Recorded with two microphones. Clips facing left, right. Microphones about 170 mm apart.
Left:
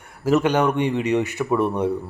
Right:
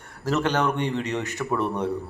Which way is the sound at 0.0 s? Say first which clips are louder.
Left 6 dB; 10° left (ahead or behind).